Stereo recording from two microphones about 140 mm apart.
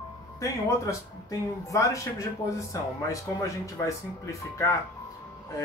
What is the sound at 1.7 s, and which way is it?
Speech, 20° left (ahead or behind).